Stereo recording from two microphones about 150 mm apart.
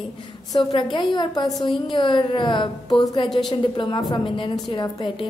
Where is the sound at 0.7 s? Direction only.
35° left (ahead or behind).